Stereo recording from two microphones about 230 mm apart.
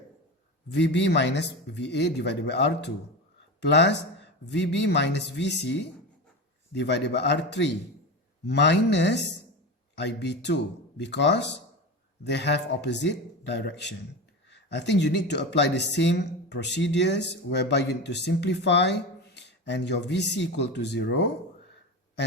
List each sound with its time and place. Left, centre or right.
0.8 s speech: left